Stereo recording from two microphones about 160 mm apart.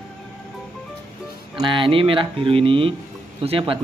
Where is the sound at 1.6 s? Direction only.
30° right (ahead or behind).